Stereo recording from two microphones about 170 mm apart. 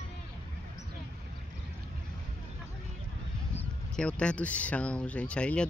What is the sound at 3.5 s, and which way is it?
Speech, 5° left (ahead or behind).